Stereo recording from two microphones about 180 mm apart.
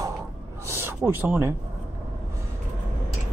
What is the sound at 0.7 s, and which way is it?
Speech, 15° right (ahead or behind).